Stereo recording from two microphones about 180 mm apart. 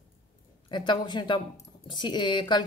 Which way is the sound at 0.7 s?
25° left (ahead or behind).